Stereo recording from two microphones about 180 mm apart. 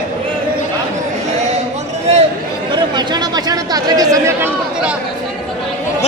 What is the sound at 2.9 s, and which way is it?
Chatter, 25° right (ahead or behind).